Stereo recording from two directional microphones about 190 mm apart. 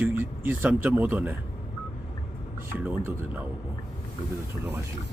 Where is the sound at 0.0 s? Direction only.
10° right (ahead or behind).